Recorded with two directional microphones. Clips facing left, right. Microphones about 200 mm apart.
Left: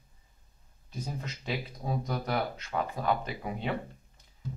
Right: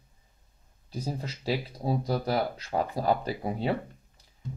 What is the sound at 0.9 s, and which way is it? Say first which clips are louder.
Speech: right 4 dB; 35° right (ahead or behind).